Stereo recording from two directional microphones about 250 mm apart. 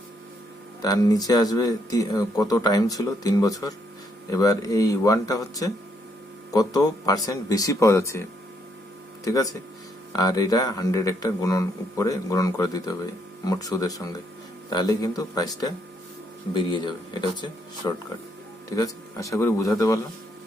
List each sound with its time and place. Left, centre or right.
0.8 s speech: centre
9.2 s speech: centre